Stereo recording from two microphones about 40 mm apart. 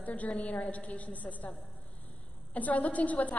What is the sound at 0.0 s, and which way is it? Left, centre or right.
A woman's voice, left.